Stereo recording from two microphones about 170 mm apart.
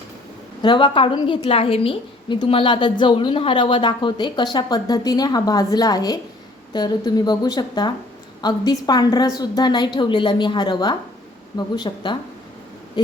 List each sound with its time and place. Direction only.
0.6 s a woman's voice: 30° left (ahead or behind)